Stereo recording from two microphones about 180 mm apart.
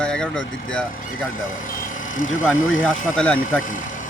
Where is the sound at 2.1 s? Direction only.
90° left.